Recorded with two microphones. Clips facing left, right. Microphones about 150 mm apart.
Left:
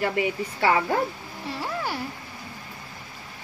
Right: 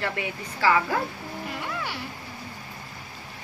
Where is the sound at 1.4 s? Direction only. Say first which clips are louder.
Left 5 dB; 40° left (ahead or behind).